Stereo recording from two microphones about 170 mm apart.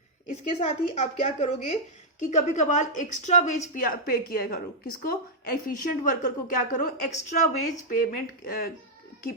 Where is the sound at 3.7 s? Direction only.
65° left (ahead or behind).